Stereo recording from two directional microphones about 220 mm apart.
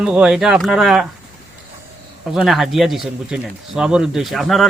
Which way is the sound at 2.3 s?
Centre (ahead or behind).